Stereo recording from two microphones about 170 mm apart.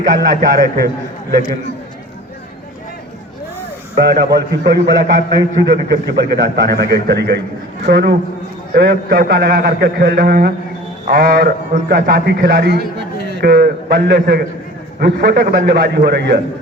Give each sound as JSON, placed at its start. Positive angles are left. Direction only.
{"t": 0.0, "sound": "a man's voice", "side_deg": -65}
{"t": 3.9, "sound": "a man's voice", "side_deg": -70}